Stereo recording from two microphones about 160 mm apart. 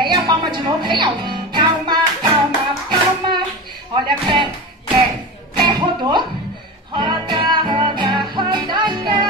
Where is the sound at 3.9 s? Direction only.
30° right (ahead or behind).